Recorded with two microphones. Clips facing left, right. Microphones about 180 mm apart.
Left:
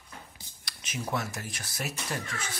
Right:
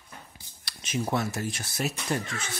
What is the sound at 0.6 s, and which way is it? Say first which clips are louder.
Speech: right 6 dB; 30° right (ahead or behind).